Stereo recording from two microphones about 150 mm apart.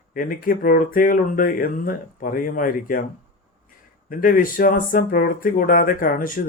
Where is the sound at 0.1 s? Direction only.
70° left (ahead or behind).